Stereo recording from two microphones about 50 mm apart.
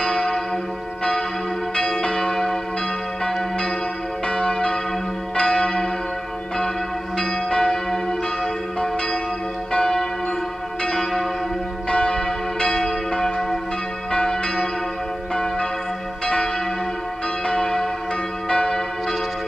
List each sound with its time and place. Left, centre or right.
0.0 s church bell: centre
1.8 s church bell: centre
4.3 s church bell: centre
7.2 s church bell: centre
9.7 s church bell: centre
17.5 s church bell: centre